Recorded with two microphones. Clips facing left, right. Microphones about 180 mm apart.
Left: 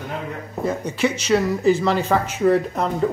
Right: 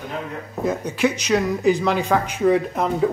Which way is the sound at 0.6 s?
10° right (ahead or behind).